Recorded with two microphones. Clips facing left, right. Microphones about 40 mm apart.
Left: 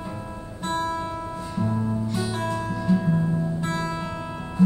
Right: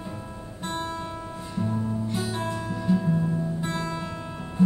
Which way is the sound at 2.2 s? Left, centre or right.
Left.